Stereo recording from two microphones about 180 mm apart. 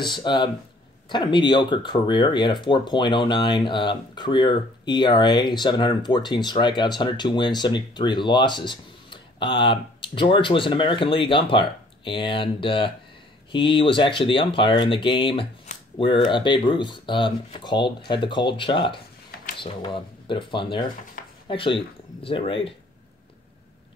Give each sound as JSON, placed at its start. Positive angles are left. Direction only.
{"t": 0.0, "sound": "speech", "side_deg": 25}